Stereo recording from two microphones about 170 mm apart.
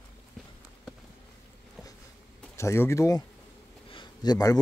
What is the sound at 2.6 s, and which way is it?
Speech, 15° left (ahead or behind).